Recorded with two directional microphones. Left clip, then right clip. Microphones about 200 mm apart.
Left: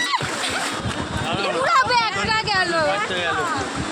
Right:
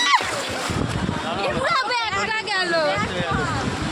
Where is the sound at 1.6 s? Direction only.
25° left (ahead or behind).